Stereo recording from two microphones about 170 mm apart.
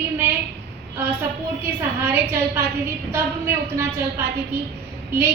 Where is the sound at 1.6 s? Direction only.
15° right (ahead or behind).